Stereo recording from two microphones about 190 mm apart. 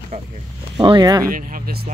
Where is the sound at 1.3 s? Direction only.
45° right (ahead or behind).